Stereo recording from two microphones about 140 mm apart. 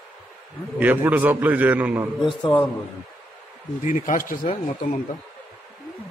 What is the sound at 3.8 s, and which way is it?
Speech, 65° left (ahead or behind).